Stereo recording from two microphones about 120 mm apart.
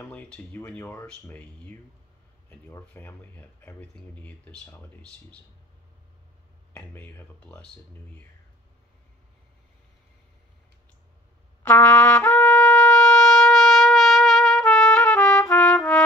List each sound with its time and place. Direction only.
0.0 s speech: 15° left (ahead or behind)
2.9 s speech: 15° left (ahead or behind)
6.7 s speech: 15° left (ahead or behind)
11.6 s trumpet: 10° left (ahead or behind)